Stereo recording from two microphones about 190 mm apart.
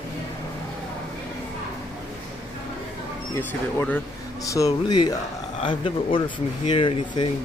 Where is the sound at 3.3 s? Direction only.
10° left (ahead or behind).